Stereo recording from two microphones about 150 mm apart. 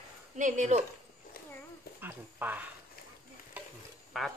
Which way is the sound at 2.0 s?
15° right (ahead or behind).